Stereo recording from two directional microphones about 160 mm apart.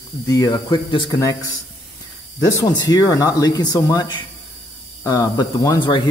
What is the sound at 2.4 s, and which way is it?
Speech, 20° left (ahead or behind).